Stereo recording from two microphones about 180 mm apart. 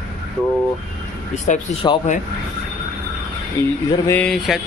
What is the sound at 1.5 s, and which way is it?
Speech, 45° left (ahead or behind).